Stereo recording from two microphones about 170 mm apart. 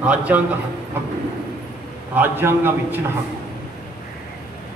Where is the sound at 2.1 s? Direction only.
10° right (ahead or behind).